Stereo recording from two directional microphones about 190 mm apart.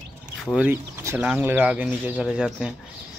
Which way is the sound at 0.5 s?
10° right (ahead or behind).